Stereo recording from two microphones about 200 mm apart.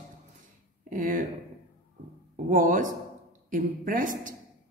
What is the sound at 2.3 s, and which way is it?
A woman's voice, 40° right (ahead or behind).